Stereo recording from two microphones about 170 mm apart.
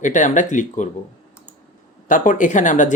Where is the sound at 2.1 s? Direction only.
50° left (ahead or behind).